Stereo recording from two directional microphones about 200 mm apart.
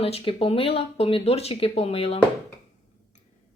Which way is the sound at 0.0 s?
30° left (ahead or behind).